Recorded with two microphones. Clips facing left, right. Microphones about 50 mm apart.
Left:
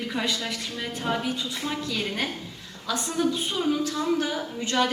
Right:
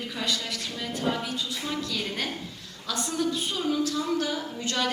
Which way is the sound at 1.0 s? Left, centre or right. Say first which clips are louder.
Left 1 dB; centre.